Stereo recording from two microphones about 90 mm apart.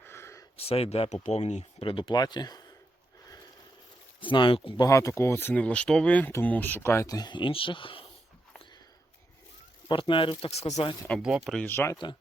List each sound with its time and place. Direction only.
0.0 s a sound: 30° left (ahead or behind)
0.5 s speech: 90° left
1.8 s speech: 75° left (ahead or behind)
2.0 s speech: 50° left (ahead or behind)
4.2 s speech: 65° left (ahead or behind)
4.9 s speech: 35° left (ahead or behind)
5.5 s speech: 15° left (ahead or behind)
7.1 s speech: 50° left (ahead or behind); by 8.0 s 75° left (ahead or behind)
9.9 s speech: 65° left (ahead or behind)
11.2 s speech: 5° right (ahead or behind)
11.7 s speech: 25° left (ahead or behind)